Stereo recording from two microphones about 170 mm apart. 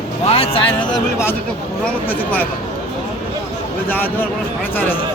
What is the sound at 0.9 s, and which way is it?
Speech, 15° left (ahead or behind).